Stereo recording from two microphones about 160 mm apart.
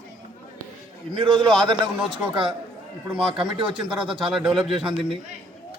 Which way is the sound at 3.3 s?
30° right (ahead or behind).